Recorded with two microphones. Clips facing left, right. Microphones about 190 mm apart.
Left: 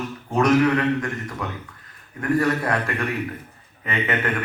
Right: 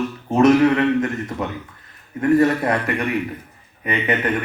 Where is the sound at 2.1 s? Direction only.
20° right (ahead or behind).